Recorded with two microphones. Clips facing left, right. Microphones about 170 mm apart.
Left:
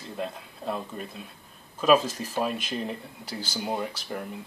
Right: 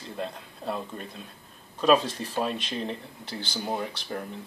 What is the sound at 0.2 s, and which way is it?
Speech, 5° left (ahead or behind).